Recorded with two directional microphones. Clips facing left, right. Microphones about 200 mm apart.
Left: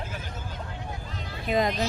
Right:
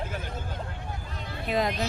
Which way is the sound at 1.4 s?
Centre (ahead or behind).